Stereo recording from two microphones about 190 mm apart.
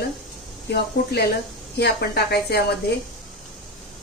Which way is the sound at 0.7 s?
60° left (ahead or behind).